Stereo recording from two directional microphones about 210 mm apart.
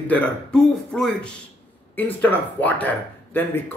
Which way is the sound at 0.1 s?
5° left (ahead or behind).